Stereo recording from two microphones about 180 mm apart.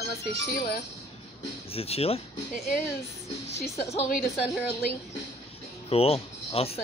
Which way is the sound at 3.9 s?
35° left (ahead or behind).